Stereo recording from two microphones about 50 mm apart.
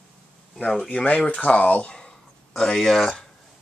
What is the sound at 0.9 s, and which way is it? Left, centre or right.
Speech, left.